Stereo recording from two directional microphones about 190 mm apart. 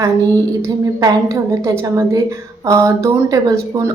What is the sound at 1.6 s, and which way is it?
Speech, 15° right (ahead or behind).